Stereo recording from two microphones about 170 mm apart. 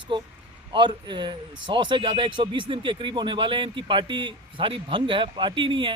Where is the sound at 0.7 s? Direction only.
25° right (ahead or behind).